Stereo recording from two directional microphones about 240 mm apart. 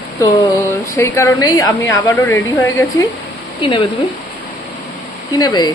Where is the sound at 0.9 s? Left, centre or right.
Centre.